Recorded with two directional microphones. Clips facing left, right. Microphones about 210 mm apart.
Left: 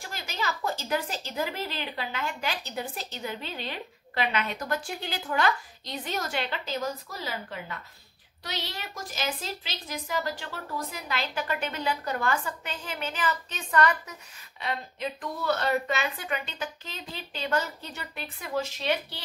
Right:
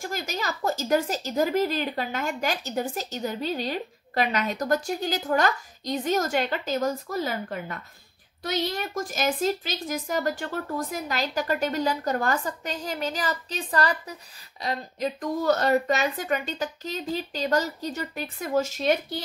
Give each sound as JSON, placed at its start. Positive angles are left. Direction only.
{"t": 0.0, "sound": "a woman's voice", "side_deg": -45}